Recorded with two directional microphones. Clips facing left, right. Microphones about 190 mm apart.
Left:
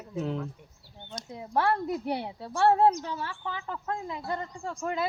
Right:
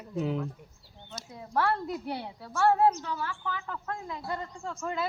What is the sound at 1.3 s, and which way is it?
A woman's voice, 20° left (ahead or behind).